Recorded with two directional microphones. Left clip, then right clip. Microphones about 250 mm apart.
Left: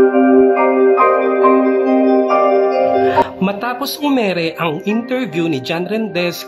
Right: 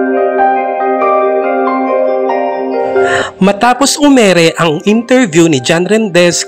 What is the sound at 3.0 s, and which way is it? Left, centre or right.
Speech, right.